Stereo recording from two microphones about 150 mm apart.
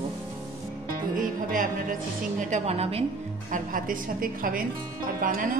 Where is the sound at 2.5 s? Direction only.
45° right (ahead or behind).